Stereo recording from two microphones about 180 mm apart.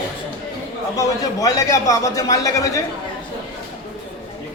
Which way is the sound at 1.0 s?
20° left (ahead or behind).